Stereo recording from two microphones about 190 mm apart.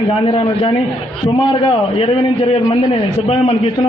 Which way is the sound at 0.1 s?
30° left (ahead or behind).